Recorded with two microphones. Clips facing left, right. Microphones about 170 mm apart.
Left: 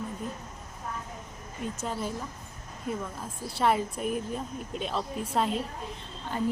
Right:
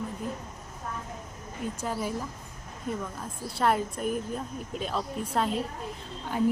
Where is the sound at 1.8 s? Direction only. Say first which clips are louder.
Right 2 dB; 5° right (ahead or behind).